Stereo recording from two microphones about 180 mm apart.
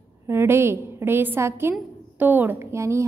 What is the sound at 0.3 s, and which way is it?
A woman's voice, 15° right (ahead or behind).